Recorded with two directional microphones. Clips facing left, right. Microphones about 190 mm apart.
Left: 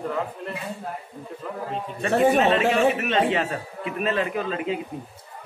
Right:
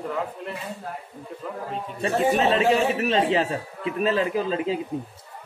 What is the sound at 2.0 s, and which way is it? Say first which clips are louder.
A man's voice: left 2 dB; 35° right (ahead or behind).